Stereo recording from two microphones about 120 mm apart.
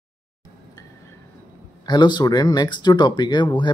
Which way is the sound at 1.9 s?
40° left (ahead or behind).